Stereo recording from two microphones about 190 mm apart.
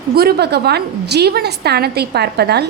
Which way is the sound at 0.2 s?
55° right (ahead or behind).